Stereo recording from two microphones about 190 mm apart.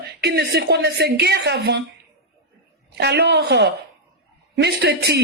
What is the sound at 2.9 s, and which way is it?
Speech, 60° right (ahead or behind).